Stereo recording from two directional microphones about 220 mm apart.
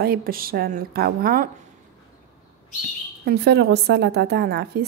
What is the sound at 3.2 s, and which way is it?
A woman's voice, 50° right (ahead or behind).